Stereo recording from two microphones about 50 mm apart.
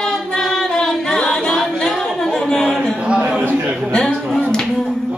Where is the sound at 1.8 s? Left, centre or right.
Centre.